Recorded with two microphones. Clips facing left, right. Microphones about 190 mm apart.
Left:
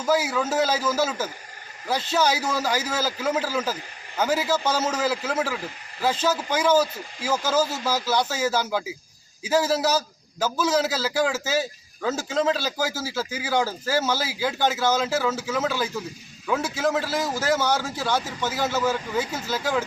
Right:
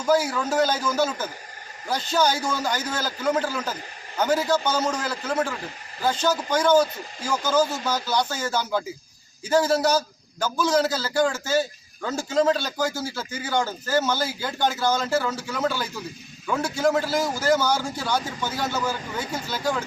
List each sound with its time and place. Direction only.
0.0 s a man's voice: 5° left (ahead or behind)